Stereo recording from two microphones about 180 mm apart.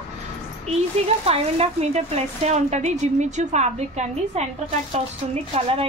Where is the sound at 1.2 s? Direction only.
35° right (ahead or behind).